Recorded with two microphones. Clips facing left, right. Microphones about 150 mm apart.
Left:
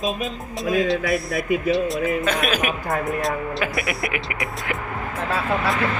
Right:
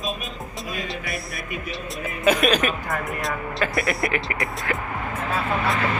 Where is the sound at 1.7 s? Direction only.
5° right (ahead or behind).